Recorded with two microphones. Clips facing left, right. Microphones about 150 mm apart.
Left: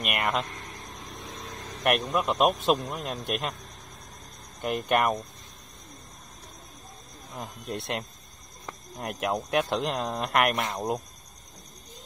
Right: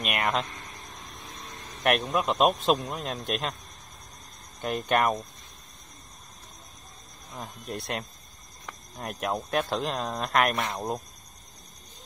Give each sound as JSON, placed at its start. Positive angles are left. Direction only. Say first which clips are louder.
{"t": 0.0, "sound": "speech", "louder": "even", "side_deg": 5}
{"t": 1.8, "sound": "speech", "louder": "even", "side_deg": 10}
{"t": 4.6, "sound": "speech", "louder": "even", "side_deg": 5}
{"t": 7.3, "sound": "speech", "louder": "left 1 dB", "side_deg": 25}
{"t": 9.3, "sound": "speech", "louder": "left 1 dB", "side_deg": 10}